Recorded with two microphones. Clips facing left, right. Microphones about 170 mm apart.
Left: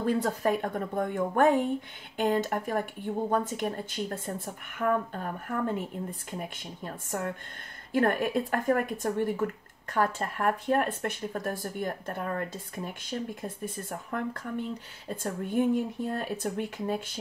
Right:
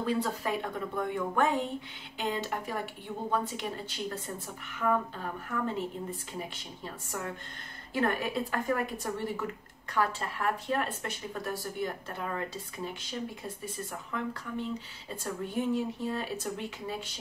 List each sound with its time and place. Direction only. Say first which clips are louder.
0.0 s speech: left 4 dB; 50° left (ahead or behind)